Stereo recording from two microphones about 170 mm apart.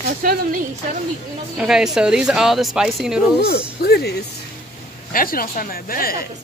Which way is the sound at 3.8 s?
70° left (ahead or behind).